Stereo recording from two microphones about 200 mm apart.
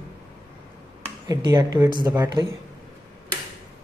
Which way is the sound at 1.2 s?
20° right (ahead or behind).